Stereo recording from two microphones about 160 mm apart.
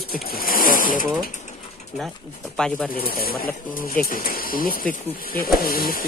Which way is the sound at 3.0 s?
70° left (ahead or behind).